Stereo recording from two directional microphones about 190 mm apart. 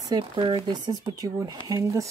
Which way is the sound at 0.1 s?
25° right (ahead or behind).